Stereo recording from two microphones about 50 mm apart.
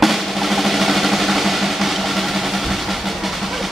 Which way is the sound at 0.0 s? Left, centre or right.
Centre.